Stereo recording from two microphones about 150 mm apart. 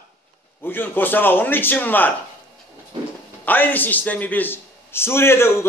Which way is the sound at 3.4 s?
10° left (ahead or behind).